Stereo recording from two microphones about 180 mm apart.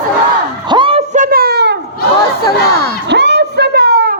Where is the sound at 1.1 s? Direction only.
50° right (ahead or behind); by 1.8 s 70° right (ahead or behind).